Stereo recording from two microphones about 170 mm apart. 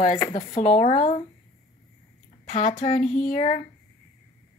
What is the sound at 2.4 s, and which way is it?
Speech, 35° left (ahead or behind).